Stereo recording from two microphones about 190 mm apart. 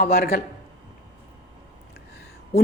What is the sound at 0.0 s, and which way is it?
Speech, 55° left (ahead or behind).